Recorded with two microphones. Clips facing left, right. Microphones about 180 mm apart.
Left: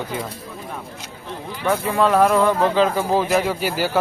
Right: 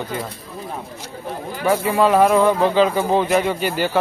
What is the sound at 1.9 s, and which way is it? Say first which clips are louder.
Speech: right 1 dB; 5° right (ahead or behind).